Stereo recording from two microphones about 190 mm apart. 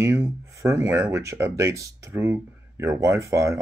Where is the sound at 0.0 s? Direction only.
15° right (ahead or behind).